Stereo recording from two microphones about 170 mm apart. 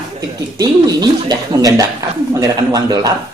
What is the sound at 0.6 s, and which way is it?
Speech, 25° right (ahead or behind).